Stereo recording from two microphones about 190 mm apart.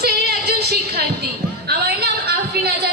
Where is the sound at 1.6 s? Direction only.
60° right (ahead or behind).